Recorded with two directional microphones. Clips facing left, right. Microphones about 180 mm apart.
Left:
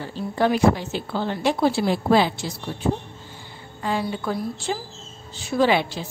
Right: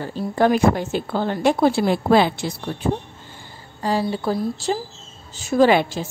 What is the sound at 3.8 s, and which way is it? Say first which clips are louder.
A woman's voice: right 4 dB; 35° right (ahead or behind).